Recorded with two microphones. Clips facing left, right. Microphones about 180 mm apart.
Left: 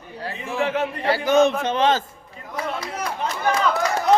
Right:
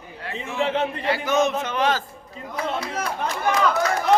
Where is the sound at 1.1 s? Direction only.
35° left (ahead or behind).